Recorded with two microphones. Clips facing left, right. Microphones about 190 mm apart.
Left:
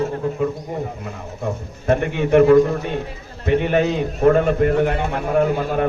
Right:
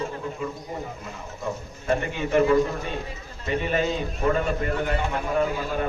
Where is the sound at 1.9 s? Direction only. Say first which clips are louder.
Left 7 dB; 60° left (ahead or behind).